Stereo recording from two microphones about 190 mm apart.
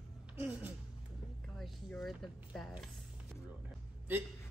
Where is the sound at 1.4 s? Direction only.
Centre (ahead or behind).